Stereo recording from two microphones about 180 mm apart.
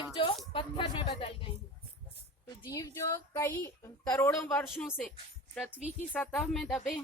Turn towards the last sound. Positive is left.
turn(degrees=0)  # may be behind; listen again after turning